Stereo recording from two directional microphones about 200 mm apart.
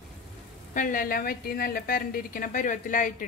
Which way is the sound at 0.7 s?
40° left (ahead or behind).